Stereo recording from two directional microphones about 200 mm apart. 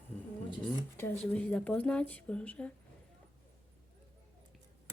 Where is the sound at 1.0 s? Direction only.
10° left (ahead or behind).